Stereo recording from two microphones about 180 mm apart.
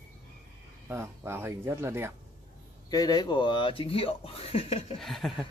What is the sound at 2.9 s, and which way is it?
Speech, 20° left (ahead or behind).